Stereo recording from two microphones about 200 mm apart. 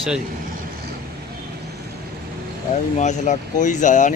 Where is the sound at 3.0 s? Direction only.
35° left (ahead or behind).